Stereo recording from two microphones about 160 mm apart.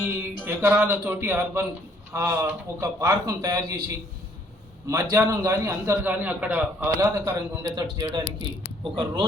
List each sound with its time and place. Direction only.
0.0 s a man's voice: 10° right (ahead or behind)
4.9 s a man's voice: 20° right (ahead or behind)